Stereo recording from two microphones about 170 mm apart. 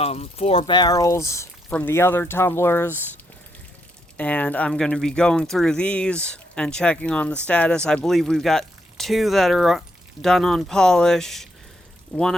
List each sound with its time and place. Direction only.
0.0 s speech: 35° left (ahead or behind); by 3.0 s 15° left (ahead or behind)
4.2 s speech: 10° left (ahead or behind)